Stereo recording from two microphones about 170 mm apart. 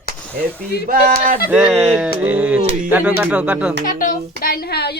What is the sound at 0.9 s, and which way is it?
Speech, 60° right (ahead or behind).